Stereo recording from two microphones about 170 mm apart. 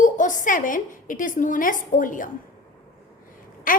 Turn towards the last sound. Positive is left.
turn(degrees=55)  # may be behind; listen again after turning